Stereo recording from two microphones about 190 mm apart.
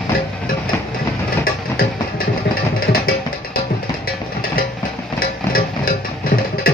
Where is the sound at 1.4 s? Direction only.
50° left (ahead or behind).